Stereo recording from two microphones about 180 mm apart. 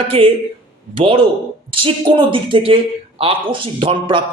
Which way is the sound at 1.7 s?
30° right (ahead or behind).